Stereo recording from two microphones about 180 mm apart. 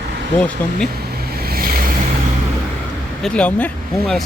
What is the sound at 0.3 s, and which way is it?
Speech, 5° left (ahead or behind).